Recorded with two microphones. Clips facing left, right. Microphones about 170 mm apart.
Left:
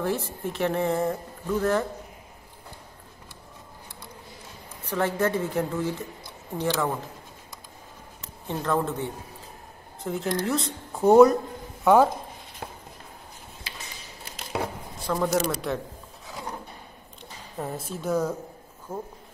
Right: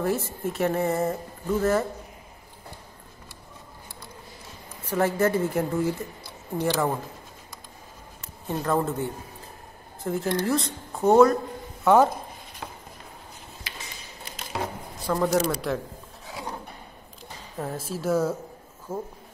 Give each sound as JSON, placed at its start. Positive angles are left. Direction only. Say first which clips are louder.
{"t": 0.0, "sound": "speech", "louder": "right 2 dB", "side_deg": -5}
{"t": 4.9, "sound": "speech", "louder": "right 2 dB", "side_deg": -10}
{"t": 8.5, "sound": "speech", "louder": "right 1 dB", "side_deg": -5}
{"t": 11.1, "sound": "a man's voice", "louder": "left 2 dB", "side_deg": 15}
{"t": 15.0, "sound": "speech", "louder": "right 2 dB", "side_deg": 0}
{"t": 17.6, "sound": "speech", "louder": "right 1 dB", "side_deg": 0}